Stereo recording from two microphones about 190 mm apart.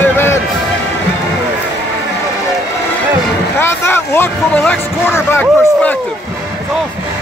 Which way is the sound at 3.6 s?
10° left (ahead or behind).